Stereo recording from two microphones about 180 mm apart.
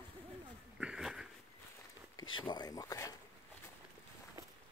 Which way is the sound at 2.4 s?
25° left (ahead or behind).